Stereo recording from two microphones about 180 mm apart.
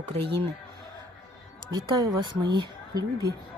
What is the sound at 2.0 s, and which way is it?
Speech, 25° right (ahead or behind).